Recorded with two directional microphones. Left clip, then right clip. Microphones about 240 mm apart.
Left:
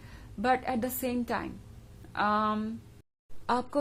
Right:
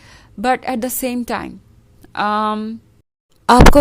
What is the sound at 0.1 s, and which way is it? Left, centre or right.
A woman's voice, right.